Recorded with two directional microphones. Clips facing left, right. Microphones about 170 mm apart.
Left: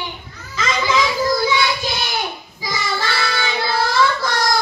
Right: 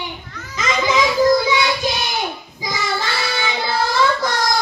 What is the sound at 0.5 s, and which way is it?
Children playing, 20° right (ahead or behind).